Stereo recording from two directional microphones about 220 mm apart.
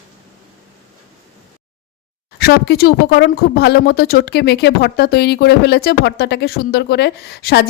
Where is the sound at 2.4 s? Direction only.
45° left (ahead or behind).